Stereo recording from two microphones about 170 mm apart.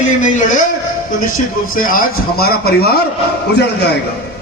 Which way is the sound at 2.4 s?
65° left (ahead or behind).